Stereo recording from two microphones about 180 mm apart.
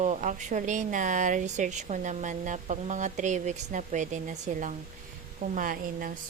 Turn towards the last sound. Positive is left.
turn(degrees=-50)  # may be behind; listen again after turning